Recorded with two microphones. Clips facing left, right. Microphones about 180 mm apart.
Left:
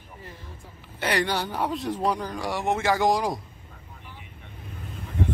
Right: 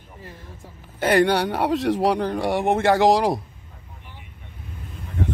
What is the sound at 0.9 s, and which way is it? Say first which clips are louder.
Speech: right 8 dB; 50° right (ahead or behind).